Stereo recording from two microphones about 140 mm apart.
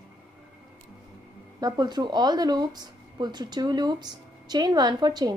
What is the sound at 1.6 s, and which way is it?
Speech, 30° right (ahead or behind).